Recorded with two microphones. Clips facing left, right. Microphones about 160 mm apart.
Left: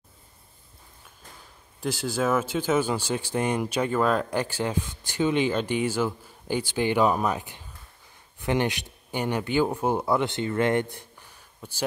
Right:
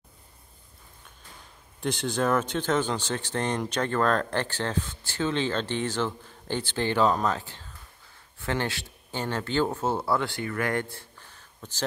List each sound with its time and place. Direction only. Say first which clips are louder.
1.8 s speech: even; 5° left (ahead or behind)